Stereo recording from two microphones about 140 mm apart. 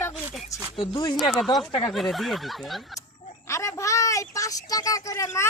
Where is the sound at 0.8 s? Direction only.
35° left (ahead or behind).